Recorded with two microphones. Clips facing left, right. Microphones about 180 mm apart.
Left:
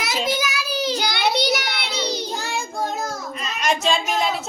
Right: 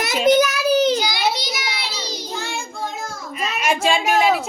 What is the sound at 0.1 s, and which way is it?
Child singing, 60° right (ahead or behind).